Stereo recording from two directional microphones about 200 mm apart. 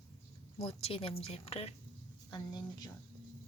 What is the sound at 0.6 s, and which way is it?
Speech, 30° left (ahead or behind).